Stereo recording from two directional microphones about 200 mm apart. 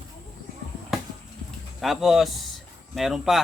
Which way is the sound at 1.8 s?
Centre (ahead or behind).